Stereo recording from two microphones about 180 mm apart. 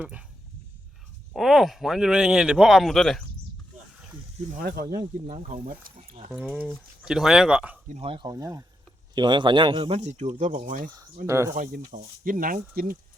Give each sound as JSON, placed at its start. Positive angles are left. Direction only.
{"t": 0.0, "sound": "speech", "side_deg": -5}
{"t": 1.3, "sound": "speech", "side_deg": 0}
{"t": 4.5, "sound": "speech", "side_deg": -55}
{"t": 5.2, "sound": "speech", "side_deg": -40}
{"t": 6.3, "sound": "speech", "side_deg": -5}
{"t": 7.9, "sound": "speech", "side_deg": -35}
{"t": 11.3, "sound": "speech", "side_deg": -15}
{"t": 11.5, "sound": "speech", "side_deg": -50}